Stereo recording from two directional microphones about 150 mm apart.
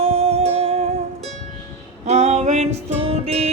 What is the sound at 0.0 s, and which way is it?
Music, 40° right (ahead or behind).